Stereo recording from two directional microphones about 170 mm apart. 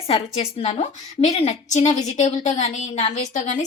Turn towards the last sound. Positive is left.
turn(degrees=45)  # may be behind; listen again after turning